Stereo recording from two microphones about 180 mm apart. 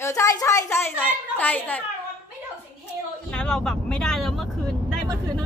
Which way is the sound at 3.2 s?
5° left (ahead or behind).